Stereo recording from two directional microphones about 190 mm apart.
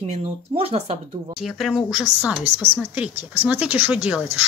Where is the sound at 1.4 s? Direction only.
Centre (ahead or behind).